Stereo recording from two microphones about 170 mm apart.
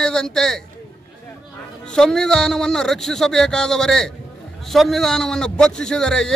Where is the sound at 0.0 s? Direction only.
5° left (ahead or behind).